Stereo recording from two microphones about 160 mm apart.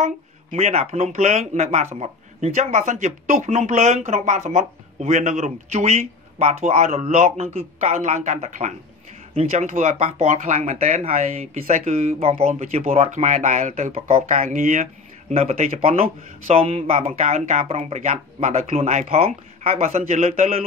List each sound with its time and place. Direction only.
0.0 s speech: 40° right (ahead or behind)
9.7 s speech: 55° right (ahead or behind)
10.1 s speech: 45° right (ahead or behind)
12.2 s speech: 40° right (ahead or behind)
14.3 s speech: 55° right (ahead or behind)
15.3 s speech: 40° right (ahead or behind)